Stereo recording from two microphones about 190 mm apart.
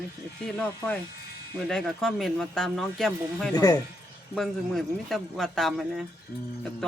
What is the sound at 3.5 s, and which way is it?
Speech, 20° left (ahead or behind).